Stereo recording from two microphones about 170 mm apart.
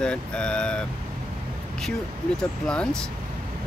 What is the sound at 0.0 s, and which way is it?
Speech, 5° left (ahead or behind).